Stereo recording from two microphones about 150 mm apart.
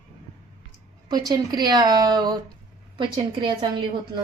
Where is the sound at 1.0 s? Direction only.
30° right (ahead or behind).